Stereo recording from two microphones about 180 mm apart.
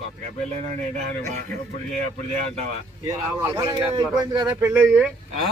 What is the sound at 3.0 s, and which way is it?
A man's voice, 10° right (ahead or behind).